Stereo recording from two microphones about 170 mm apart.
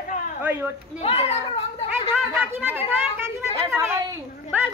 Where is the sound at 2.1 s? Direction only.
10° right (ahead or behind).